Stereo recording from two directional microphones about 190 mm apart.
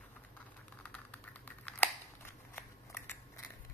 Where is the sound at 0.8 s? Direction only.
10° left (ahead or behind).